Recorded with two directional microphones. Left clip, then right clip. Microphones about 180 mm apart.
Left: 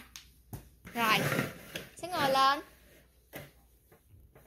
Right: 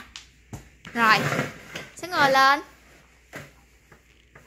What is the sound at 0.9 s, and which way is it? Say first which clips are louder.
Speech: right 9 dB; 15° right (ahead or behind).